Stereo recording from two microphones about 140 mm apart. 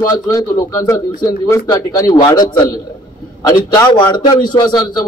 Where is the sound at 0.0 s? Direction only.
25° left (ahead or behind).